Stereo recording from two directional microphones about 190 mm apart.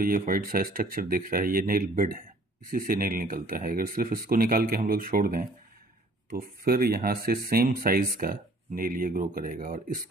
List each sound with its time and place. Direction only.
0.0 s speech: 45° right (ahead or behind)